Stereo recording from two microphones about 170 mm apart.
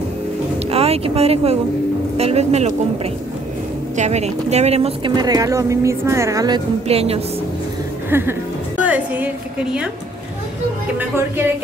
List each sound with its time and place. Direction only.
0.7 s a woman's voice: 35° right (ahead or behind)
3.9 s a woman's voice: 40° right (ahead or behind)
5.1 s a woman's voice: 20° right (ahead or behind)
6.9 s a woman's voice: 35° right (ahead or behind)
8.1 s a woman's voice: 15° right (ahead or behind)